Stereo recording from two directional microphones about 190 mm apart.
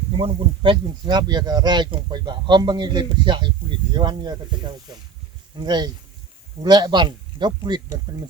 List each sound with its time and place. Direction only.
0.2 s speech: 30° right (ahead or behind)
5.5 s speech: 20° right (ahead or behind)